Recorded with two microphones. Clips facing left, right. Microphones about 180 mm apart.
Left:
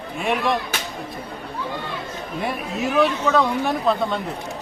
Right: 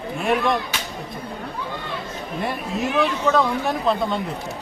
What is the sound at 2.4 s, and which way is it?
Speech, centre (ahead or behind).